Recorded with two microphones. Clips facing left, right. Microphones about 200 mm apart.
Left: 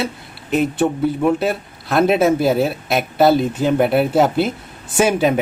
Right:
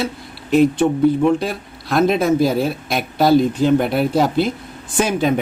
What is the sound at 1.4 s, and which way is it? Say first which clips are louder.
Speech: left 4 dB; 5° left (ahead or behind).